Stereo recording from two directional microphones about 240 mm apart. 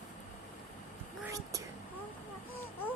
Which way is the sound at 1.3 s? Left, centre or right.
Centre.